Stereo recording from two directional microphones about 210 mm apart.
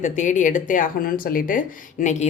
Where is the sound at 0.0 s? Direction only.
35° left (ahead or behind).